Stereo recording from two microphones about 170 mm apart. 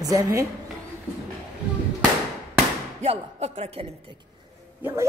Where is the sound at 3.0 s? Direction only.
40° right (ahead or behind).